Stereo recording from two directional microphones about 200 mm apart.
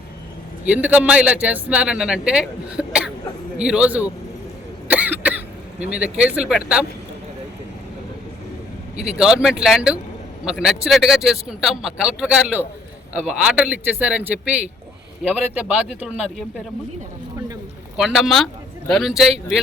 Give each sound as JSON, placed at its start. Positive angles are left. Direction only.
{"t": 0.7, "sound": "a man's voice", "side_deg": -5}
{"t": 4.9, "sound": "cough", "side_deg": -5}
{"t": 5.8, "sound": "a man's voice", "side_deg": -5}
{"t": 9.1, "sound": "a man's voice", "side_deg": -5}
{"t": 17.9, "sound": "a man's voice", "side_deg": 0}